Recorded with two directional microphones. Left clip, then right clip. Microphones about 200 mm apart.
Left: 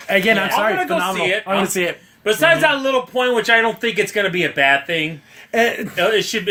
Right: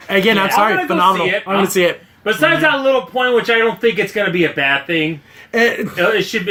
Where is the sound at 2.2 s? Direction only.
50° left (ahead or behind).